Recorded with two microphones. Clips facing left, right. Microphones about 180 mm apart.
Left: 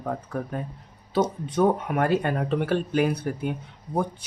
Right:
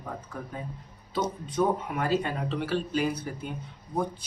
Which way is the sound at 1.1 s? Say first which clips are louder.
Left 6 dB; 60° left (ahead or behind).